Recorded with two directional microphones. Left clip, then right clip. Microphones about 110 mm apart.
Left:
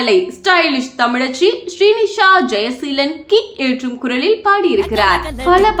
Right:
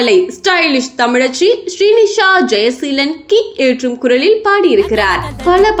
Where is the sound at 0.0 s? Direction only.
35° right (ahead or behind).